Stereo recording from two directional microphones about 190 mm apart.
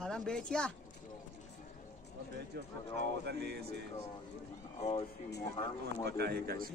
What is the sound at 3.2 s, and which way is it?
Speech, 60° right (ahead or behind).